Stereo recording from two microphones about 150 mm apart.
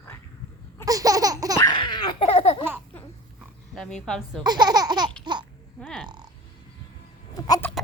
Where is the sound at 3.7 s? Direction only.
5° left (ahead or behind).